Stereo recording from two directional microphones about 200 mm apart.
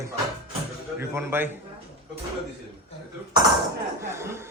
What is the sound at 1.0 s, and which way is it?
Speech, 10° right (ahead or behind).